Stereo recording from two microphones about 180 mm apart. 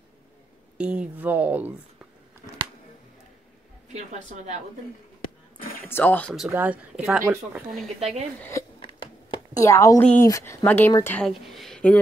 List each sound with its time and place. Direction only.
0.7 s speech: 5° right (ahead or behind)
3.9 s a woman's voice: 40° right (ahead or behind)
5.9 s speech: 10° left (ahead or behind)
6.3 s speech: 5° right (ahead or behind)
8.4 s speech: 15° left (ahead or behind)
8.7 s a sound: 25° left (ahead or behind)
10.0 s speech: 15° left (ahead or behind)
11.1 s speech: centre (ahead or behind)